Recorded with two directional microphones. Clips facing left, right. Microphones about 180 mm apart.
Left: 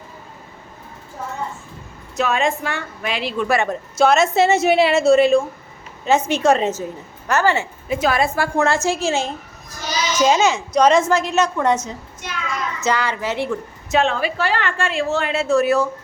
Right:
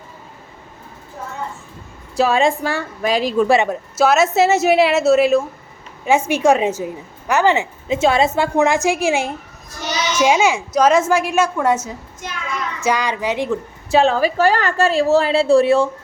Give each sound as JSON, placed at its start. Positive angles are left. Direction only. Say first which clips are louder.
{"t": 2.1, "sound": "a woman's voice", "louder": "right 4 dB", "side_deg": -30}
{"t": 3.7, "sound": "a woman's voice", "louder": "even", "side_deg": -5}
{"t": 13.9, "sound": "a woman's voice", "louder": "right 4 dB", "side_deg": -35}